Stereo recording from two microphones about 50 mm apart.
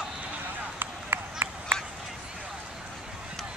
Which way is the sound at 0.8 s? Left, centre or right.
Right.